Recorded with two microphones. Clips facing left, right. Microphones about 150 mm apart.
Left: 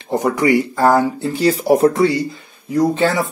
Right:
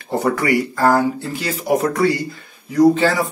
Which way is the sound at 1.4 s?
35° left (ahead or behind).